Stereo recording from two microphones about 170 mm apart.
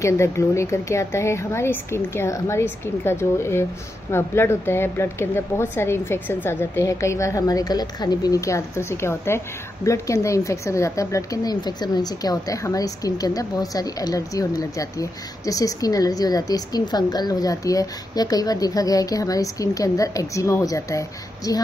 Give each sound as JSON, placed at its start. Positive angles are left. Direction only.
{"t": 0.0, "sound": "a woman's voice", "side_deg": 15}